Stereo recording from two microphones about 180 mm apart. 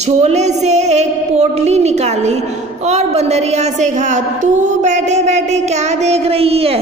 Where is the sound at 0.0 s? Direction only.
40° right (ahead or behind).